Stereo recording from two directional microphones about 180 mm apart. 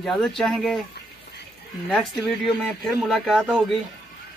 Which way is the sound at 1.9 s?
5° left (ahead or behind).